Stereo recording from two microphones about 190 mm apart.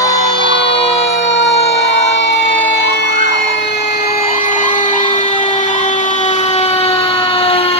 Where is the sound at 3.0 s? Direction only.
65° left (ahead or behind).